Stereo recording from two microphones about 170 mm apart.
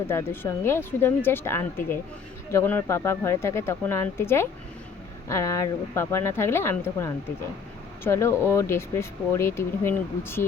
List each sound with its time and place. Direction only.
0.1 s speech: 15° left (ahead or behind)